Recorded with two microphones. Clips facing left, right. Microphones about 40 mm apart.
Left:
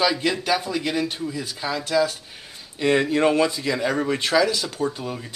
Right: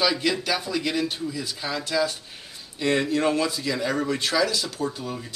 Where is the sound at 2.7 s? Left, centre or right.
Left.